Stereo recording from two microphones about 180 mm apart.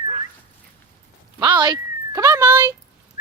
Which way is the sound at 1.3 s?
25° right (ahead or behind).